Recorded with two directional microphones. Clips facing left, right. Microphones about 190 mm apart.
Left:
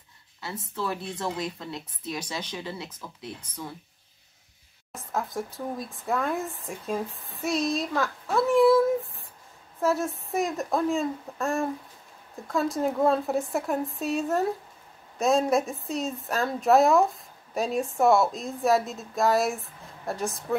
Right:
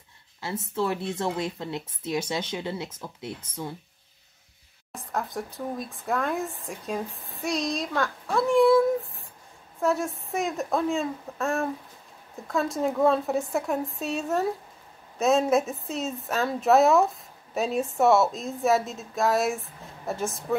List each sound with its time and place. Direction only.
0.4 s speech: 25° right (ahead or behind)
4.9 s a woman's voice: centre (ahead or behind)